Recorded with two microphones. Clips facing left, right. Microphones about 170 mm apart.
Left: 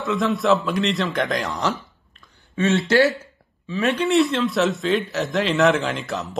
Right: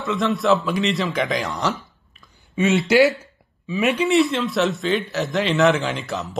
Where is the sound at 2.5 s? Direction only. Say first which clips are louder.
Right 1 dB; 15° right (ahead or behind).